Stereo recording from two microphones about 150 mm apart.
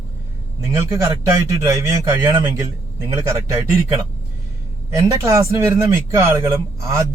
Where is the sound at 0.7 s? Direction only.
20° right (ahead or behind).